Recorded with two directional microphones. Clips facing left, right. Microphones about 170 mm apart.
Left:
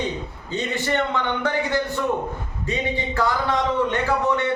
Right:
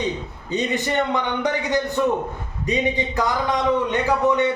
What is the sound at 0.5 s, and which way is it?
A man's voice, 15° right (ahead or behind).